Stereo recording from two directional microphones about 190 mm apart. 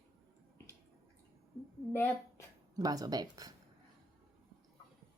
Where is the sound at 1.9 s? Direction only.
10° left (ahead or behind).